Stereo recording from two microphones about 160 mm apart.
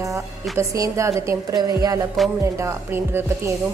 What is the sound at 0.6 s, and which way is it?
A woman's voice, 20° right (ahead or behind).